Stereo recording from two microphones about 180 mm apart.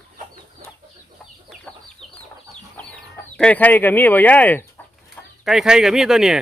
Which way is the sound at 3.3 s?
5° left (ahead or behind).